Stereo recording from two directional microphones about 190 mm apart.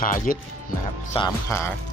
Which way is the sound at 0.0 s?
45° left (ahead or behind).